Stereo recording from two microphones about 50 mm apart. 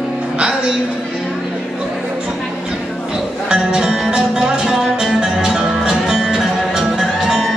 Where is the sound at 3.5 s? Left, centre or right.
Centre.